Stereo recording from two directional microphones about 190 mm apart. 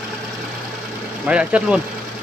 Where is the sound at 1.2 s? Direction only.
5° right (ahead or behind).